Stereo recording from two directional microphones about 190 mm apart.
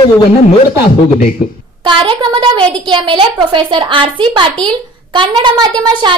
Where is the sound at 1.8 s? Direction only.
25° right (ahead or behind).